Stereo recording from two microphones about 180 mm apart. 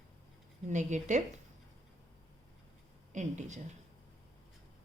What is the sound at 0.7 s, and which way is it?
Speech, 40° right (ahead or behind).